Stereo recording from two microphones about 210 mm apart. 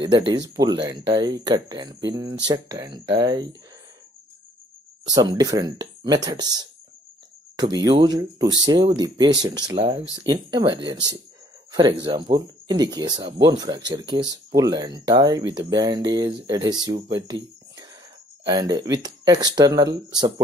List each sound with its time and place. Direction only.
0.3 s speech: 20° right (ahead or behind)
5.1 s speech: 20° right (ahead or behind)
7.7 s speech: 20° right (ahead or behind)